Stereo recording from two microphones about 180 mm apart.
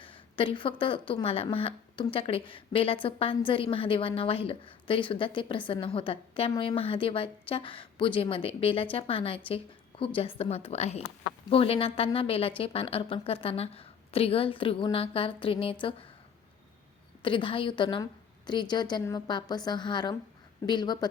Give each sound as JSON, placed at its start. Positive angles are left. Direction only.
{"t": 0.0, "sound": "speech", "side_deg": 30}
{"t": 17.2, "sound": "speech", "side_deg": 30}